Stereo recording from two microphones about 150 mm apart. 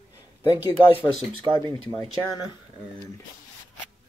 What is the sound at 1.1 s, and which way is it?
Speech, 35° right (ahead or behind).